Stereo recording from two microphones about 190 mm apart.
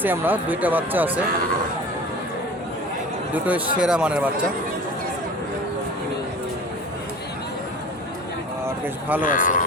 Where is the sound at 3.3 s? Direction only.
10° right (ahead or behind).